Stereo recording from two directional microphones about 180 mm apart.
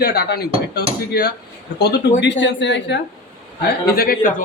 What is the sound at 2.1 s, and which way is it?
Speech, 80° left.